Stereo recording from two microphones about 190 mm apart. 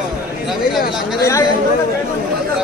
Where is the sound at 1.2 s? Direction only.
15° left (ahead or behind).